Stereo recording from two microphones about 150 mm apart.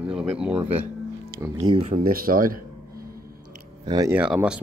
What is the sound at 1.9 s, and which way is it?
Speech, 75° right (ahead or behind).